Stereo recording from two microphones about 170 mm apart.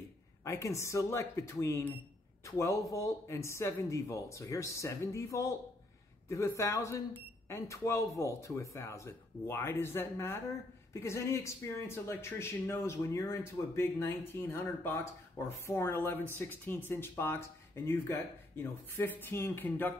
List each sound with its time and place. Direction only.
0.5 s speech: 15° left (ahead or behind)